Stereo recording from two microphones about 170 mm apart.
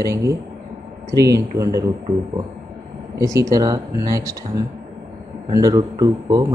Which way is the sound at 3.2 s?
20° right (ahead or behind).